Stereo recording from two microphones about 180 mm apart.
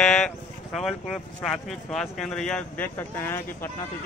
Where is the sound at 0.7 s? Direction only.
Centre (ahead or behind).